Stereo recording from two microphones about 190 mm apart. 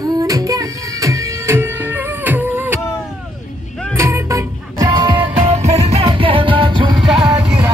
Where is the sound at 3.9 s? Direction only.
15° right (ahead or behind).